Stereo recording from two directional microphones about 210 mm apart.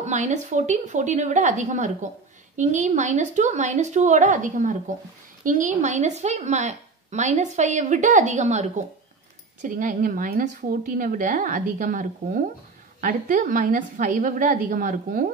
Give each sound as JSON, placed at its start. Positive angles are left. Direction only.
{"t": 0.0, "sound": "speech", "side_deg": -35}